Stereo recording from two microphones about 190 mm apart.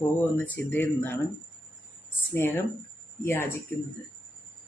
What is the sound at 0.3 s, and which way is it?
Speech, 10° left (ahead or behind).